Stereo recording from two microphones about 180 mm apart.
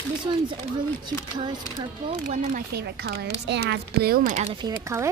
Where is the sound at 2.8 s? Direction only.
65° right (ahead or behind).